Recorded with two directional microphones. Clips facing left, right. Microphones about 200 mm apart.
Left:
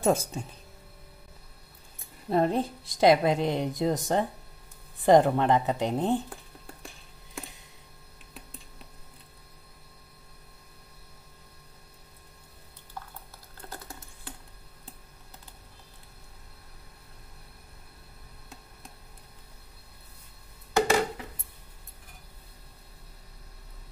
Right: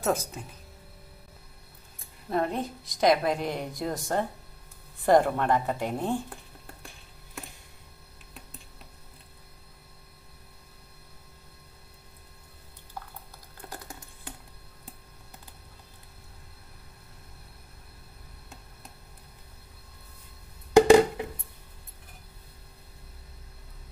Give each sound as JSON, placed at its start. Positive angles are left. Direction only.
{"t": 0.0, "sound": "a woman's voice", "side_deg": 25}
{"t": 2.2, "sound": "a woman's voice", "side_deg": 30}
{"t": 13.6, "sound": "typing", "side_deg": -15}
{"t": 20.7, "sound": "a sound", "side_deg": -15}